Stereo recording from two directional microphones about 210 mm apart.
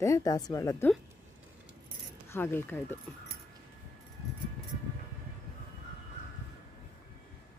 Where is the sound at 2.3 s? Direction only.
10° left (ahead or behind).